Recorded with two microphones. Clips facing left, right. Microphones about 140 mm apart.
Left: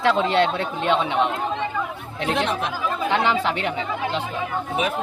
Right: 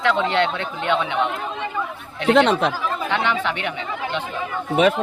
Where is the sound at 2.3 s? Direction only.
70° right (ahead or behind).